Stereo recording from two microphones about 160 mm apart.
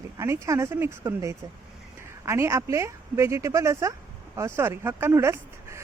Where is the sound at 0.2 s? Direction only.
20° right (ahead or behind).